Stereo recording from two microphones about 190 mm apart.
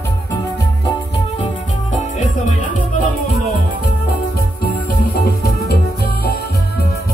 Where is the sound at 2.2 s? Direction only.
40° left (ahead or behind).